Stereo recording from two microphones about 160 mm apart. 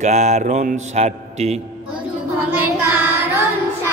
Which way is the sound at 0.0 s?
45° right (ahead or behind).